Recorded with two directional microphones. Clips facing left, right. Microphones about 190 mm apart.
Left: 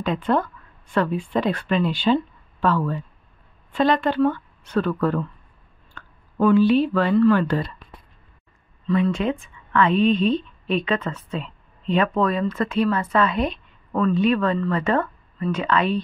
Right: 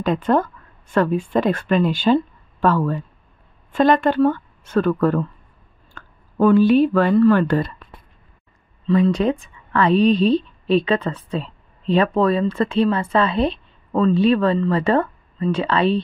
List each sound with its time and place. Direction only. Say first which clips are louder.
0.0 s speech: right 3 dB; 45° right (ahead or behind)
8.8 s speech: right 4 dB; 35° right (ahead or behind)